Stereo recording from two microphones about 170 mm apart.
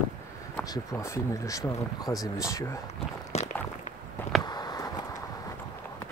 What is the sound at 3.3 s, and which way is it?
Walk, 40° left (ahead or behind).